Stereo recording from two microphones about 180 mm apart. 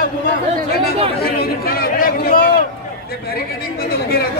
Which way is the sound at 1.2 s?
55° left (ahead or behind).